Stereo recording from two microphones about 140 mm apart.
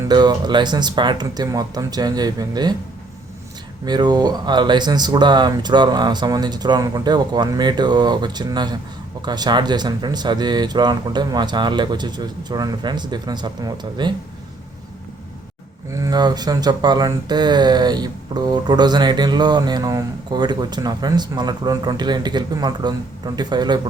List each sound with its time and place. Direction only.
0.1 s speech: 30° right (ahead or behind)
3.8 s speech: 30° right (ahead or behind)
15.9 s speech: 25° right (ahead or behind)